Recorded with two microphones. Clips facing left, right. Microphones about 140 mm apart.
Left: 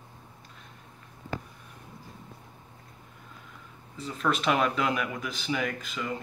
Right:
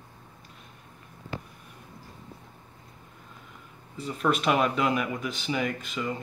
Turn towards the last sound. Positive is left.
turn(degrees=-5)  # may be behind; listen again after turning